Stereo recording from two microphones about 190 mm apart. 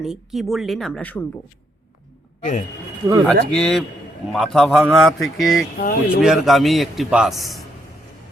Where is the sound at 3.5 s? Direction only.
5° left (ahead or behind).